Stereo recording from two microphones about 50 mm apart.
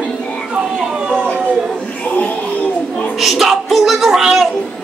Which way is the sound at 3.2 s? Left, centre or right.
Centre.